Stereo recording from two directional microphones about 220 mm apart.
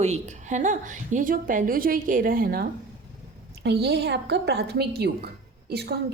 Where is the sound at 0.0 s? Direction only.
30° right (ahead or behind).